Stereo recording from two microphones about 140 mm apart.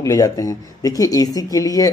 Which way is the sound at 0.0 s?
25° left (ahead or behind).